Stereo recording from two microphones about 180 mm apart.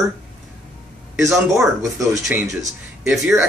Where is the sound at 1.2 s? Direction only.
Centre (ahead or behind).